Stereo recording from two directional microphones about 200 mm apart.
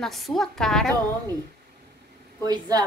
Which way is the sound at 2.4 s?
20° right (ahead or behind).